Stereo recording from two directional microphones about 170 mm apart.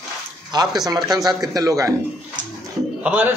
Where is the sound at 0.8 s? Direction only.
20° right (ahead or behind).